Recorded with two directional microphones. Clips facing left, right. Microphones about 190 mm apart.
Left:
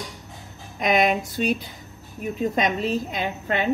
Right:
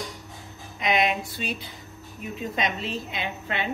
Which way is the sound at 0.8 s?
45° left (ahead or behind).